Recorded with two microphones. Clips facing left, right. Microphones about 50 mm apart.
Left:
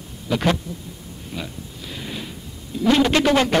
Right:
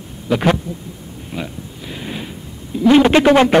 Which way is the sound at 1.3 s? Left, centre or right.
Right.